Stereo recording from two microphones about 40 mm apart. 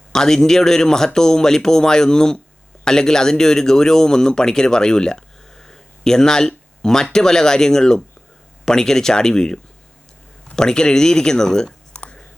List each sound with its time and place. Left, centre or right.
0.1 s speech: centre